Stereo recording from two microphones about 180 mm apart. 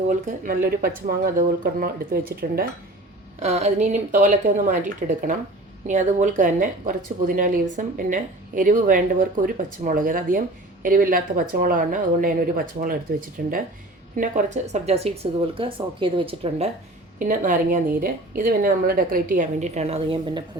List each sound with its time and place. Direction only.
0.3 s a woman's voice: 55° right (ahead or behind)
3.4 s a woman's voice: 40° right (ahead or behind)
17.2 s a woman's voice: 50° right (ahead or behind); by 20.4 s 35° right (ahead or behind)